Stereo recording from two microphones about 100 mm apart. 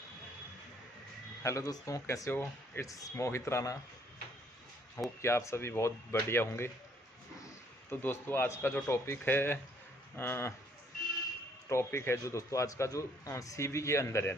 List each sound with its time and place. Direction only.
1.4 s speech: 35° left (ahead or behind)
5.2 s a man's voice: 25° left (ahead or behind)
7.9 s a man's voice: 20° left (ahead or behind)
11.7 s a man's voice: 25° left (ahead or behind)